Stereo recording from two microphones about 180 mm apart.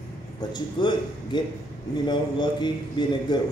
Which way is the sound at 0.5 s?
25° left (ahead or behind).